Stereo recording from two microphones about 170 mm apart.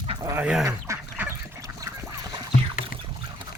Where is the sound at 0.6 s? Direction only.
15° right (ahead or behind).